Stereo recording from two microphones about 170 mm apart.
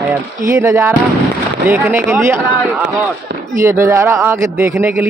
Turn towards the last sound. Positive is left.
turn(degrees=-10)  # may be behind; listen again after turning